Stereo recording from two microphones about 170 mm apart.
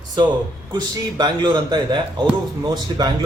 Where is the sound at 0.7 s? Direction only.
25° right (ahead or behind).